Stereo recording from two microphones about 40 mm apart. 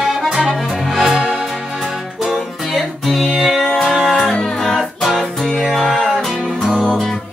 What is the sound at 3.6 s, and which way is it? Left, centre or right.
Music, centre.